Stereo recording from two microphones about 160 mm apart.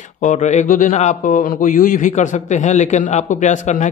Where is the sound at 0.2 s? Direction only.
50° left (ahead or behind).